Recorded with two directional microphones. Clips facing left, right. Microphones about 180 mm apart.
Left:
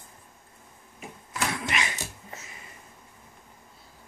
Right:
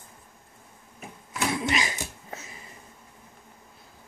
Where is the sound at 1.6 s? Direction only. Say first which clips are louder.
Right 3 dB; 30° right (ahead or behind).